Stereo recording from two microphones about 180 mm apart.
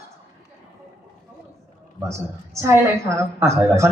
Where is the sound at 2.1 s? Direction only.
15° right (ahead or behind).